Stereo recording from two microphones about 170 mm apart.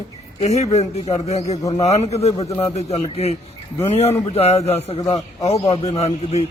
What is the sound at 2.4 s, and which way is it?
Speech, 20° left (ahead or behind).